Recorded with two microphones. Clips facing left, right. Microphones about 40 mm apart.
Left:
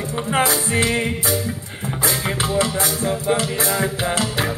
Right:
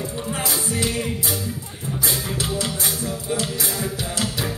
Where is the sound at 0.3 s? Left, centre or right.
Left.